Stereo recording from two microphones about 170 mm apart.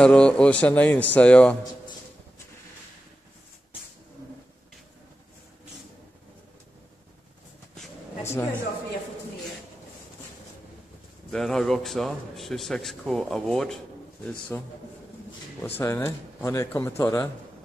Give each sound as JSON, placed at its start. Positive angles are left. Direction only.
{"t": 0.0, "sound": "speech", "side_deg": 5}
{"t": 8.3, "sound": "speech", "side_deg": 10}
{"t": 11.2, "sound": "a man's voice", "side_deg": 5}
{"t": 14.5, "sound": "speech", "side_deg": 15}
{"t": 15.8, "sound": "speech", "side_deg": 15}